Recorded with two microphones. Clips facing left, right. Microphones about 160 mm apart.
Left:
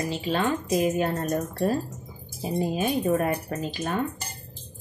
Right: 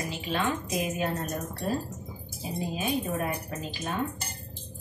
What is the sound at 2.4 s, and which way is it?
A woman's voice, 50° left (ahead or behind).